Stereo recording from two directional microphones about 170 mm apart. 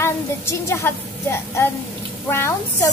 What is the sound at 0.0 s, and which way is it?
Speech, 15° left (ahead or behind).